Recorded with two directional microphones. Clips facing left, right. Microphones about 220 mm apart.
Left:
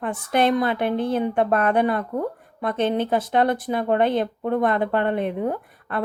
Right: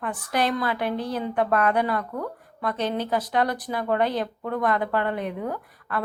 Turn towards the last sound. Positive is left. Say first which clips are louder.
# left 2 dB
turn(degrees=25)  # may be behind; listen again after turning